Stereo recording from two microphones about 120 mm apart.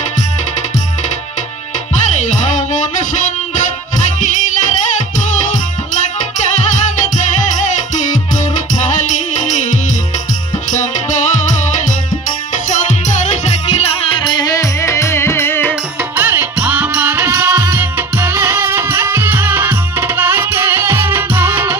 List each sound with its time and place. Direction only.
2.0 s music: 75° left (ahead or behind); by 3.1 s 90° left
5.5 s music: 90° left
9.4 s music: 80° left
12.6 s music: 80° left; by 15.7 s 20° left (ahead or behind)
16.2 s music: 15° right (ahead or behind)
17.5 s music: 30° right (ahead or behind)
17.7 s music: 20° right (ahead or behind)